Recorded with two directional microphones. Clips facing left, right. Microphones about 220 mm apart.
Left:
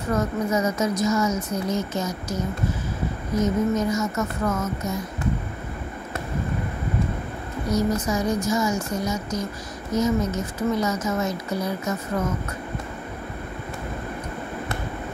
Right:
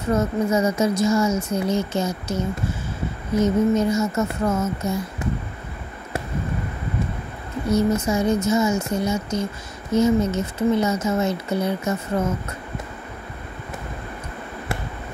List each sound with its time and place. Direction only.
0.1 s speech: 25° right (ahead or behind)
7.6 s speech: 25° right (ahead or behind)